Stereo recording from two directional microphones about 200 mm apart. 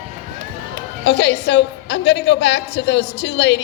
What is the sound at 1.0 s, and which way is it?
A woman's voice, 60° left (ahead or behind).